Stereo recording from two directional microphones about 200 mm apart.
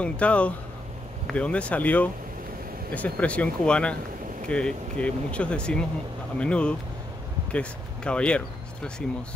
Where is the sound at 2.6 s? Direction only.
45° right (ahead or behind).